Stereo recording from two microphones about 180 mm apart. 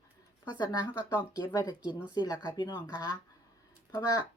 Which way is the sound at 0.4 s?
25° left (ahead or behind).